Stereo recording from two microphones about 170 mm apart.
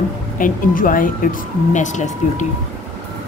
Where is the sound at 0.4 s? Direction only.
55° left (ahead or behind).